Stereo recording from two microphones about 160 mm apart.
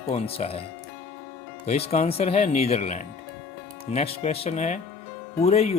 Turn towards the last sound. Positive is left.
turn(degrees=40)  # may be behind; listen again after turning